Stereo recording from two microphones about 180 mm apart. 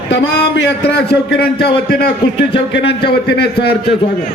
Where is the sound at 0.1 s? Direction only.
70° left (ahead or behind).